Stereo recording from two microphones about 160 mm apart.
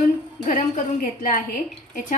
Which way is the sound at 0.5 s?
55° left (ahead or behind).